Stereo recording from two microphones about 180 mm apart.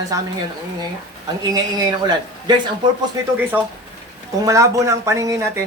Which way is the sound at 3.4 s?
10° right (ahead or behind).